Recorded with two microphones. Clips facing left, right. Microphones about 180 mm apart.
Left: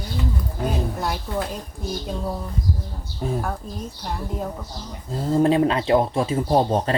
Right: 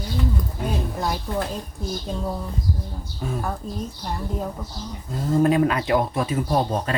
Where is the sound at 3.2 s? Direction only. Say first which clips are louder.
Left 3 dB; 30° left (ahead or behind).